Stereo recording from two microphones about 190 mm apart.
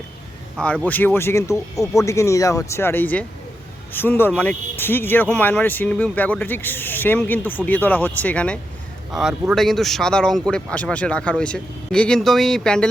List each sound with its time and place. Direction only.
0.6 s speech: 5° left (ahead or behind)